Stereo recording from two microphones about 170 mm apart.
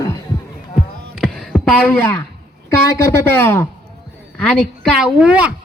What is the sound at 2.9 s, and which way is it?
A woman's voice, 15° left (ahead or behind).